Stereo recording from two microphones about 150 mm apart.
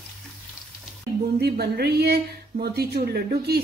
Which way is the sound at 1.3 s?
90° right.